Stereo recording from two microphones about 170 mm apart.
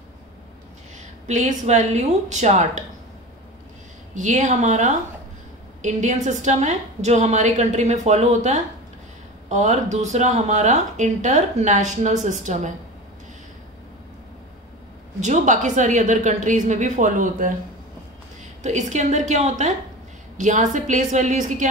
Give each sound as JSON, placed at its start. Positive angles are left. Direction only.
{"t": 1.2, "sound": "a woman's voice", "side_deg": -45}
{"t": 4.1, "sound": "speech", "side_deg": -45}
{"t": 15.1, "sound": "speech", "side_deg": -45}
{"t": 18.6, "sound": "speech", "side_deg": -45}